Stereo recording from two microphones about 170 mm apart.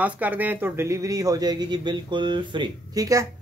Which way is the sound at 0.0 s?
10° right (ahead or behind).